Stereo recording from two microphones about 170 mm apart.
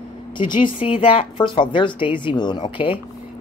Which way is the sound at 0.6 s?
30° left (ahead or behind).